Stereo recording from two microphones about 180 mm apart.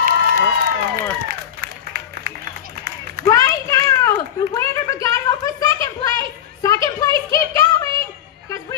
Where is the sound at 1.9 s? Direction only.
55° right (ahead or behind).